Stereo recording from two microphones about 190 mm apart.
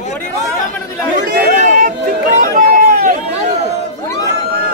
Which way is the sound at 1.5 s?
40° right (ahead or behind).